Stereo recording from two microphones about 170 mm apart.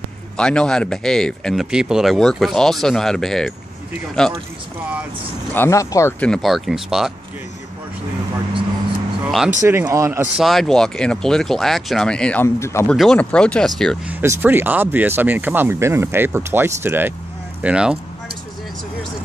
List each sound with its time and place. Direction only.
0.4 s speech: 5° left (ahead or behind)
5.5 s speech: 15° left (ahead or behind); by 7.1 s centre (ahead or behind)
9.2 s speech: centre (ahead or behind)
9.7 s speech: 15° right (ahead or behind)
10.3 s speech: centre (ahead or behind); by 12.9 s 15° left (ahead or behind)
12.9 s speech: 5° left (ahead or behind)
14.0 s speech: 15° right (ahead or behind)